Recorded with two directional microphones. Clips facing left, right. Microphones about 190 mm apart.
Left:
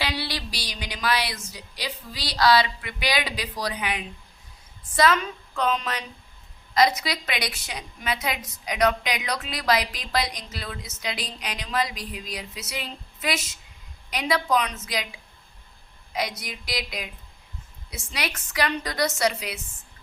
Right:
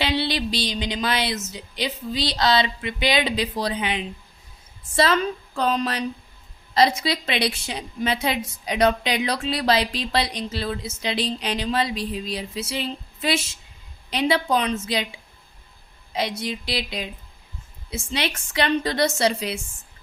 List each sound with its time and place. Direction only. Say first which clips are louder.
0.0 s a woman's voice: right 6 dB; 25° right (ahead or behind)
18.1 s a woman's voice: right 4 dB; 25° right (ahead or behind)